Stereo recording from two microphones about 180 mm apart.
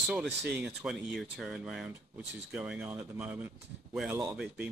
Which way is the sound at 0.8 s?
5° right (ahead or behind).